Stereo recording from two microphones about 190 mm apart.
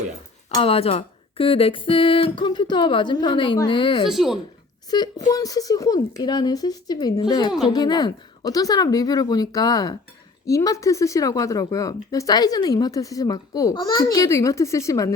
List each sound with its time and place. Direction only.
0.5 s speech: 30° left (ahead or behind)
4.1 s speech: centre (ahead or behind)
4.9 s speech: 20° left (ahead or behind)